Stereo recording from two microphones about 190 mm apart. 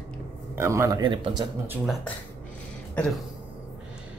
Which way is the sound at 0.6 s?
15° right (ahead or behind).